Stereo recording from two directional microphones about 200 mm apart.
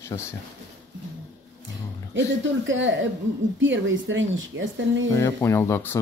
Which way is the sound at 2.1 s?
70° right (ahead or behind).